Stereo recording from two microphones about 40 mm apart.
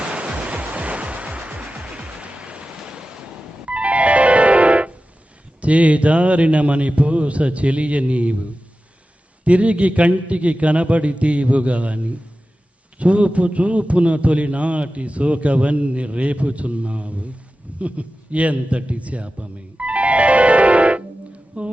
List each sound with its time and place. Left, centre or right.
0.0 s music: right
5.6 s a man's voice: right
17.7 s a sound: right